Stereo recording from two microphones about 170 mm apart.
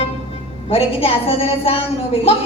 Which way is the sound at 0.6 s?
35° left (ahead or behind).